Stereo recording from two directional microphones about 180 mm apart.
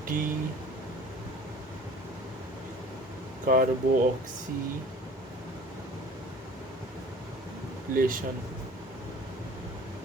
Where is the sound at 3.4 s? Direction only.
50° right (ahead or behind).